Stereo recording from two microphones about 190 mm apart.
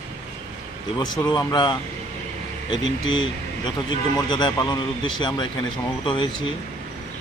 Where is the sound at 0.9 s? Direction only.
20° left (ahead or behind).